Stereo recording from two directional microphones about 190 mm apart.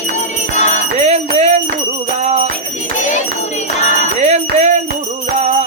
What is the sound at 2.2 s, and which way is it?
Music, 35° right (ahead or behind).